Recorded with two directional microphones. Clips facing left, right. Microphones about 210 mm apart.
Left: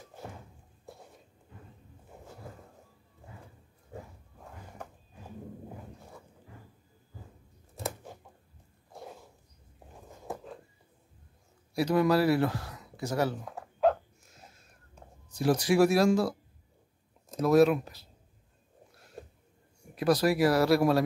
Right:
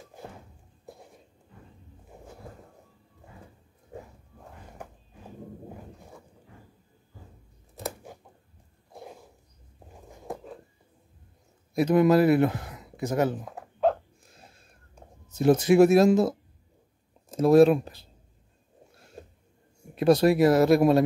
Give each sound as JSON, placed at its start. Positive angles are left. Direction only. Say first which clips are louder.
{"t": 11.7, "sound": "speech", "louder": "right 5 dB", "side_deg": -20}
{"t": 15.2, "sound": "speech", "louder": "right 6 dB", "side_deg": -25}
{"t": 19.8, "sound": "speech", "louder": "right 6 dB", "side_deg": -25}